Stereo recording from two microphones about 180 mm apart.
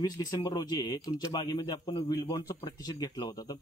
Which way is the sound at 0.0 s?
20° left (ahead or behind).